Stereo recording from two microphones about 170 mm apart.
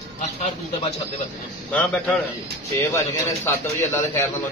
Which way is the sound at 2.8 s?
15° left (ahead or behind).